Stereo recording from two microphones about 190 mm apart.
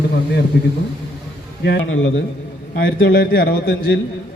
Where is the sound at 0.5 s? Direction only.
60° left (ahead or behind).